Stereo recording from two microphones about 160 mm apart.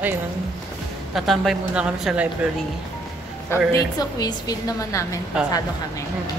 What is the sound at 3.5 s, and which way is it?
A woman's voice, 15° left (ahead or behind).